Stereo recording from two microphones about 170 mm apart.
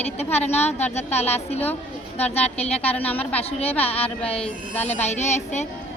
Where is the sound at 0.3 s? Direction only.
40° left (ahead or behind).